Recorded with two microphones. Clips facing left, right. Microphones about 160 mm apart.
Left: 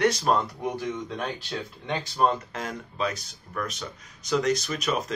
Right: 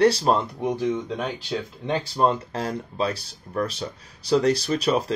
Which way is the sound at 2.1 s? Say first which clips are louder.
Right 1 dB; 30° right (ahead or behind).